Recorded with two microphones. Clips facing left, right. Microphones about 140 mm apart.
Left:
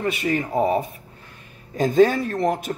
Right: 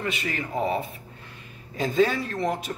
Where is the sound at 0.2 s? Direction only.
40° left (ahead or behind).